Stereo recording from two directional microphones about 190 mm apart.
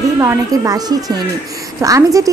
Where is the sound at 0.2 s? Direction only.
15° right (ahead or behind).